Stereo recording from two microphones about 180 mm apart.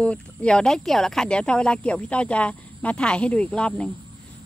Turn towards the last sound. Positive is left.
turn(degrees=5)  # may be behind; listen again after turning